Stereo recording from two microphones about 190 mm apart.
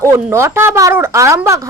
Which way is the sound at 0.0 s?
15° right (ahead or behind).